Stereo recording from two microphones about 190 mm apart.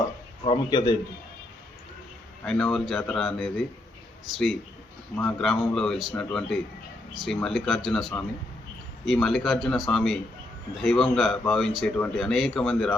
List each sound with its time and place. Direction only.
0.4 s a man's voice: 25° left (ahead or behind)
2.4 s speech: 5° left (ahead or behind)